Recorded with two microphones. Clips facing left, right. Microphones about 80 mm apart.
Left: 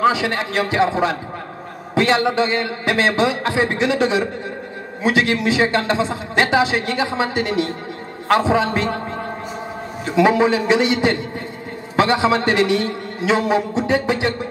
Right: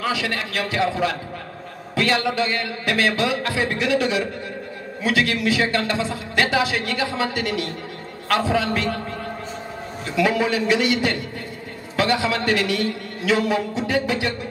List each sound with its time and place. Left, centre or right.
0.0 s a man's voice: left
10.0 s a man's voice: left